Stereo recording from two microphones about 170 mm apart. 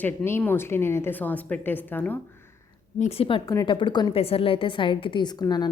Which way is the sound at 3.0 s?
35° left (ahead or behind).